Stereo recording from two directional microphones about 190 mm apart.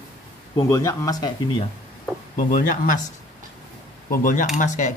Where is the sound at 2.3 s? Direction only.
45° left (ahead or behind).